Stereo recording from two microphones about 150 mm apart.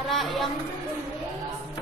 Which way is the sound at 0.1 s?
Centre (ahead or behind).